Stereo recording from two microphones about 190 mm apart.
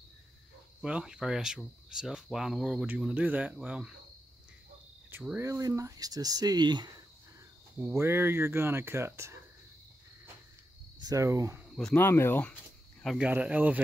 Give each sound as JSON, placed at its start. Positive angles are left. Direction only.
{"t": 0.7, "sound": "speech", "side_deg": -5}
{"t": 5.1, "sound": "speech", "side_deg": -10}
{"t": 11.0, "sound": "speech", "side_deg": -20}
{"t": 11.7, "sound": "speech", "side_deg": 5}